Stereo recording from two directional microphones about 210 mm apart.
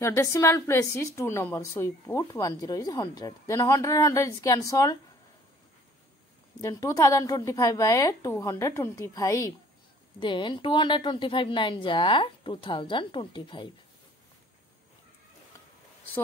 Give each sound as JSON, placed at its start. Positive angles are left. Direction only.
{"t": 0.0, "sound": "a woman's voice", "side_deg": 15}
{"t": 6.6, "sound": "a woman's voice", "side_deg": 15}